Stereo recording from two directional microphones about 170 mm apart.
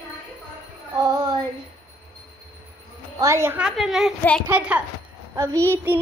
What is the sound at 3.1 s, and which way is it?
Speech, 15° right (ahead or behind).